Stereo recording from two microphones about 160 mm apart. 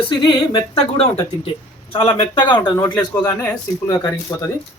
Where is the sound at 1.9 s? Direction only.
35° left (ahead or behind).